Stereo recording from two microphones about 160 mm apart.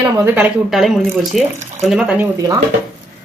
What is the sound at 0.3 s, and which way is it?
Speech, 10° right (ahead or behind).